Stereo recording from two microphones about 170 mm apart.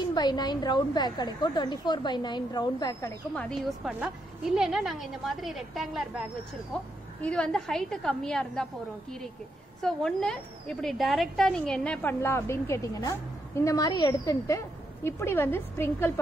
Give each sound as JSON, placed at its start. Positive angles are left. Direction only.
{"t": 0.1, "sound": "a woman's voice", "side_deg": 25}
{"t": 3.3, "sound": "a woman's voice", "side_deg": 5}
{"t": 9.8, "sound": "speech", "side_deg": 5}